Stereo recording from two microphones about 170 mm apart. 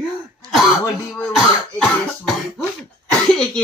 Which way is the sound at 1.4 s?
Centre (ahead or behind).